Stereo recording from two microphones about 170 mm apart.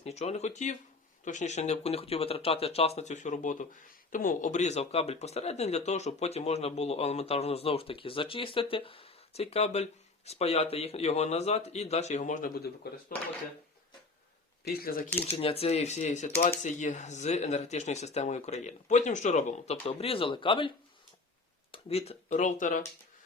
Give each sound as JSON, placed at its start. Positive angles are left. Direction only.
{"t": 0.0, "sound": "speech", "side_deg": 40}
{"t": 14.7, "sound": "speech", "side_deg": 65}
{"t": 15.3, "sound": "speech", "side_deg": 35}